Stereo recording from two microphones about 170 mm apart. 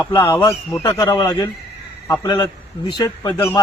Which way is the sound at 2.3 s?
30° left (ahead or behind).